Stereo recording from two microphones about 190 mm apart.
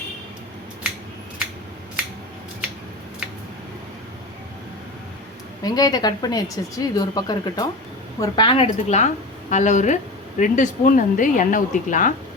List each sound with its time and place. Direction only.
5.6 s speech: 20° left (ahead or behind); by 12.1 s 45° left (ahead or behind)